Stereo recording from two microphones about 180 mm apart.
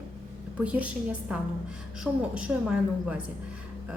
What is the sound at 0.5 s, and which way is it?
Speech, 10° right (ahead or behind).